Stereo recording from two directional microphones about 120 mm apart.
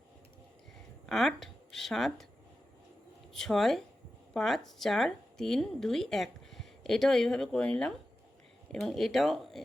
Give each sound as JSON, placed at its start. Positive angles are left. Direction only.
{"t": 1.0, "sound": "speech", "side_deg": 0}
{"t": 3.3, "sound": "speech", "side_deg": 0}